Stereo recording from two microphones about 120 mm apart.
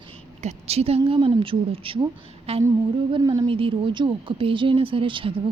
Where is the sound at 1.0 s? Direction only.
45° right (ahead or behind).